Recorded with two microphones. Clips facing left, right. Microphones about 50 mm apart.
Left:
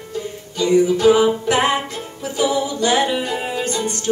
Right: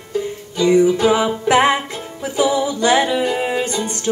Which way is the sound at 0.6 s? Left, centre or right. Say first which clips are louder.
Right 1 dB; right.